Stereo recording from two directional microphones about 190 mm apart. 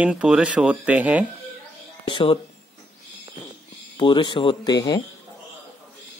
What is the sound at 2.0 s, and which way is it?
Speech, 25° left (ahead or behind).